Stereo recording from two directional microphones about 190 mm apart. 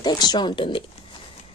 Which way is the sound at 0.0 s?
20° left (ahead or behind).